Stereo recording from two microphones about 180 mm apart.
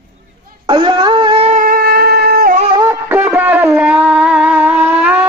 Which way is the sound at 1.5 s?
50° right (ahead or behind).